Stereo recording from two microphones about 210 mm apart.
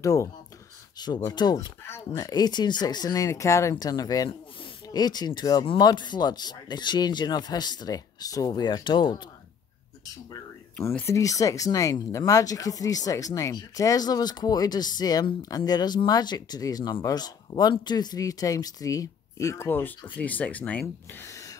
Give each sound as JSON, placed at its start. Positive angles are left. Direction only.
{"t": 0.0, "sound": "speech", "side_deg": 15}
{"t": 10.8, "sound": "speech", "side_deg": 10}